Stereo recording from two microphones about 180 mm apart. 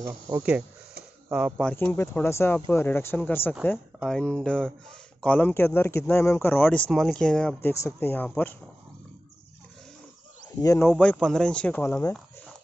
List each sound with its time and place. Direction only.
0.0 s speech: 10° right (ahead or behind)
1.7 s speech: 10° left (ahead or behind)
10.6 s speech: 20° left (ahead or behind)
10.9 s speech: 5° left (ahead or behind)